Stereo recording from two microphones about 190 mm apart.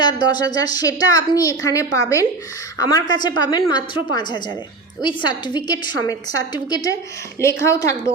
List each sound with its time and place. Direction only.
0.0 s a woman's voice: 20° left (ahead or behind)